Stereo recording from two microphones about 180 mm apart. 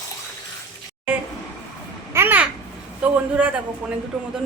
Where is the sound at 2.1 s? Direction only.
10° right (ahead or behind).